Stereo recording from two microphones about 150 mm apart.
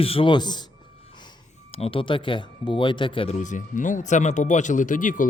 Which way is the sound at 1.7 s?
40° left (ahead or behind).